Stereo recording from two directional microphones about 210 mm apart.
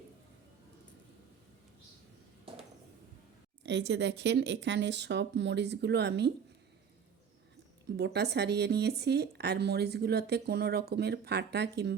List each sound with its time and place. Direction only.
3.6 s speech: 55° right (ahead or behind)
7.9 s speech: 50° right (ahead or behind)